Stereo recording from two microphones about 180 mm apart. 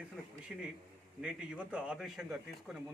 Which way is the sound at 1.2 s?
5° right (ahead or behind).